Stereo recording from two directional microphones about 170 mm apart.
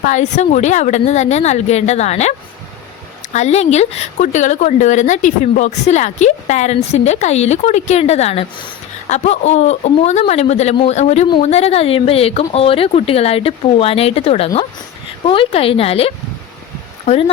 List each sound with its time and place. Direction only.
0.0 s speech: 45° left (ahead or behind)
3.3 s a woman's voice: 40° left (ahead or behind)